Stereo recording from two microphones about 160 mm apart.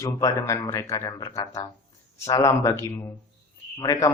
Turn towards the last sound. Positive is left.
turn(degrees=20)  # may be behind; listen again after turning